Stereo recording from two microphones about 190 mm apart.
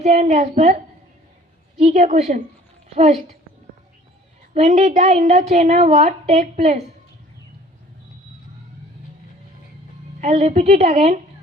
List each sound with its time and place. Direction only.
0.0 s a woman's voice: 35° right (ahead or behind)
1.8 s a woman's voice: 40° right (ahead or behind)
4.5 s a woman's voice: 40° right (ahead or behind)
10.2 s a woman's voice: 40° right (ahead or behind)